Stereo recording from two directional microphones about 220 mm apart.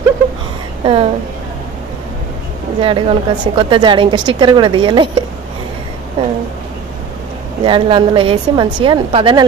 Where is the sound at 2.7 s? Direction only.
25° right (ahead or behind).